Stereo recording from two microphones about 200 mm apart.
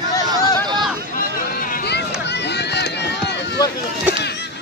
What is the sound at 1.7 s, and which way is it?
Run, 50° left (ahead or behind).